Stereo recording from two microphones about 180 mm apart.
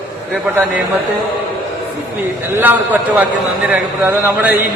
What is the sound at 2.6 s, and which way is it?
A man's voice, 10° right (ahead or behind).